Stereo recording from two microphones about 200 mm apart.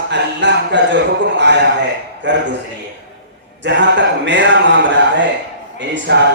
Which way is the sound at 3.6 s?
65° right (ahead or behind).